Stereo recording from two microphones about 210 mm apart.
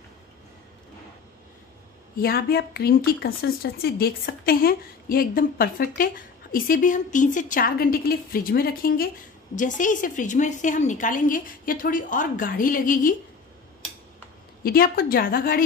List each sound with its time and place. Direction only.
2.1 s a woman's voice: 45° left (ahead or behind)
14.6 s speech: 45° left (ahead or behind)